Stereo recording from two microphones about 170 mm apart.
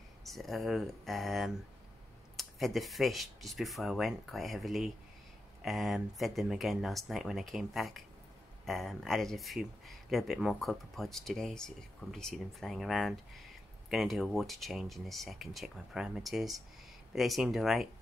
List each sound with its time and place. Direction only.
0.2 s speech: centre (ahead or behind)